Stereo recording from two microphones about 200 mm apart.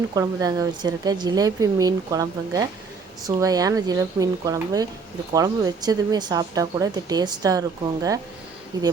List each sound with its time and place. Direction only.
0.1 s a woman's voice: 20° right (ahead or behind)
8.7 s a woman's voice: 20° right (ahead or behind)